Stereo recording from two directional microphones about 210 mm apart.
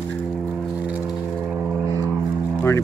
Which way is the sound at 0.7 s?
5° right (ahead or behind).